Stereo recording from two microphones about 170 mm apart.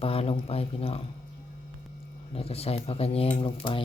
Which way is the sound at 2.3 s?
35° left (ahead or behind).